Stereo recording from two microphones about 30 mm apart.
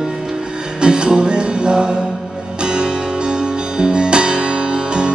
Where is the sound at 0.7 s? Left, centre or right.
Right.